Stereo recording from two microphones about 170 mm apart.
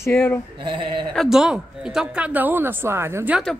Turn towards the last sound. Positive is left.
turn(degrees=-10)  # may be behind; listen again after turning